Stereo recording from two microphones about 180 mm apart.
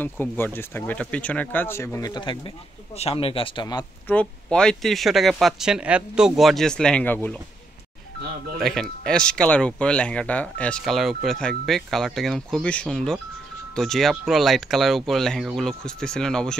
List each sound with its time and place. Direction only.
0.0 s speech: 10° left (ahead or behind)
4.1 s speech: 5° left (ahead or behind)
8.5 s speech: centre (ahead or behind)